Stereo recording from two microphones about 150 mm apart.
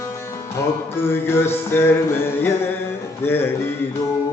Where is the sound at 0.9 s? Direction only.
15° left (ahead or behind).